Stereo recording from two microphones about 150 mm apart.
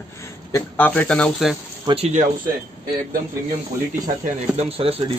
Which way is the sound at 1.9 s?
30° right (ahead or behind).